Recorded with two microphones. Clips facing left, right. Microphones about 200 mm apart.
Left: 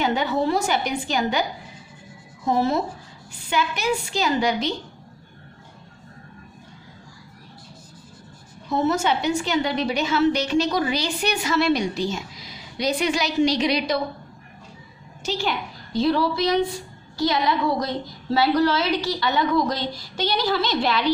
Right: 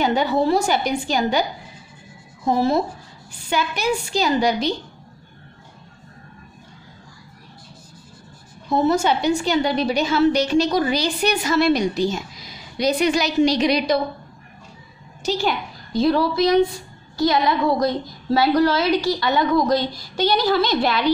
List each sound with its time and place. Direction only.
0.0 s a woman's voice: 35° right (ahead or behind)
2.4 s a woman's voice: 35° right (ahead or behind)
8.6 s a woman's voice: 35° right (ahead or behind)
15.3 s a woman's voice: 45° right (ahead or behind)